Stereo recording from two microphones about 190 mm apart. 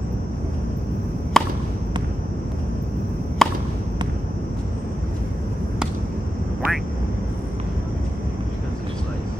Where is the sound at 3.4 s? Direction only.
Centre (ahead or behind).